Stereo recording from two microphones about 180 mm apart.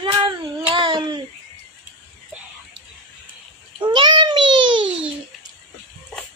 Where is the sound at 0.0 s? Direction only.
25° right (ahead or behind).